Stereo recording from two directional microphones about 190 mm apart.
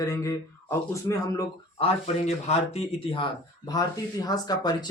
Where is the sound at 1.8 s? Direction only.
35° left (ahead or behind).